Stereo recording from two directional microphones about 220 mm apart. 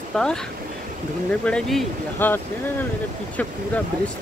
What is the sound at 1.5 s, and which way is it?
Speech, centre (ahead or behind).